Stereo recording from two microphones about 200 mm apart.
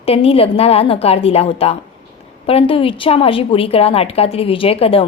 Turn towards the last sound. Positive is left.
turn(degrees=30)  # may be behind; listen again after turning